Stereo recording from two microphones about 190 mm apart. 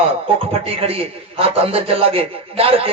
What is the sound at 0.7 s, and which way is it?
A man's voice, 30° right (ahead or behind).